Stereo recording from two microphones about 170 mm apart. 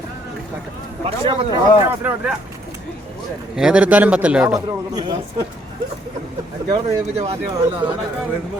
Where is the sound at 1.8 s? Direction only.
10° right (ahead or behind).